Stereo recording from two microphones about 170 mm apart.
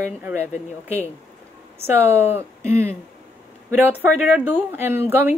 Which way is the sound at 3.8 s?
10° right (ahead or behind).